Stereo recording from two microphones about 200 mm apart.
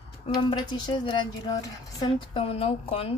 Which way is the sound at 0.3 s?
20° left (ahead or behind).